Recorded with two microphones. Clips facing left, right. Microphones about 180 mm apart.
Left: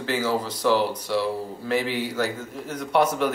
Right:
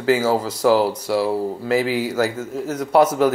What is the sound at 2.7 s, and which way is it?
Speech, 45° right (ahead or behind).